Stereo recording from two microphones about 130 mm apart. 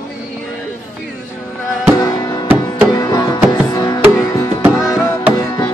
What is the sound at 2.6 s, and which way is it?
Music, 30° left (ahead or behind).